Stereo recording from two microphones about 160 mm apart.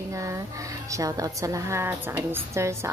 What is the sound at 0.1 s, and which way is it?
A woman's voice, 20° right (ahead or behind).